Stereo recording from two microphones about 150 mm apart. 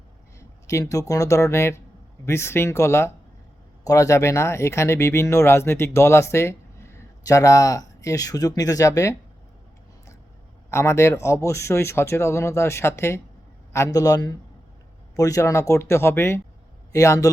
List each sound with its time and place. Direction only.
0.3 s speech: 20° left (ahead or behind)
10.7 s speech: 20° left (ahead or behind)